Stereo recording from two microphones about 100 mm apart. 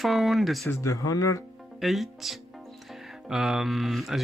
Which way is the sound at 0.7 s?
35° left (ahead or behind).